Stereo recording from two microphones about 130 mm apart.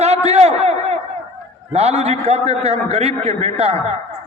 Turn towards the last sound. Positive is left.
turn(degrees=-50)  # may be behind; listen again after turning